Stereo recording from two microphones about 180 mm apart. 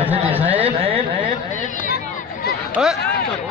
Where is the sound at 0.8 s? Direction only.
30° right (ahead or behind).